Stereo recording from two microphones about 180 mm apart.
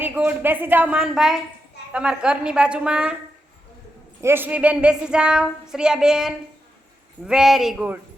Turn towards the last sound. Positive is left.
turn(degrees=-5)  # may be behind; listen again after turning